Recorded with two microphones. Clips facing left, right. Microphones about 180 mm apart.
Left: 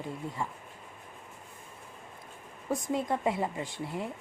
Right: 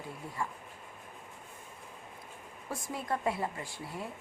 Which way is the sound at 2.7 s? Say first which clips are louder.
Left 6 dB; 20° left (ahead or behind).